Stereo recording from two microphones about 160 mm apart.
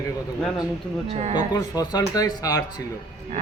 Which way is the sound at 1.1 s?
45° right (ahead or behind).